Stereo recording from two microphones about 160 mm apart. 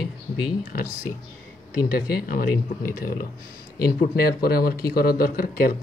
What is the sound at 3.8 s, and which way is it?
Speech, 80° left.